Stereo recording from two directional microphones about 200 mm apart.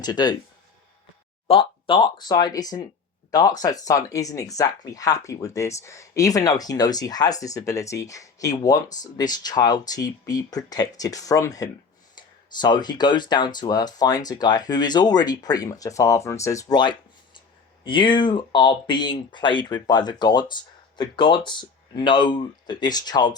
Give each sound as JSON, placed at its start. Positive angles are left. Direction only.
{"t": 0.0, "sound": "speech", "side_deg": 20}
{"t": 1.5, "sound": "speech", "side_deg": 25}